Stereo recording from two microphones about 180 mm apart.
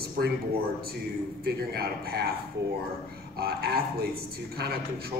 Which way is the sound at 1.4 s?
60° right (ahead or behind).